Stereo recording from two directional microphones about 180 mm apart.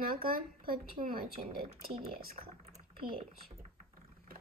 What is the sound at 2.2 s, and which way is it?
Speech, 55° right (ahead or behind).